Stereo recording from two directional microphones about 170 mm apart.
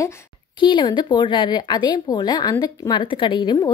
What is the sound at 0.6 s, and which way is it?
A woman's voice, 30° left (ahead or behind).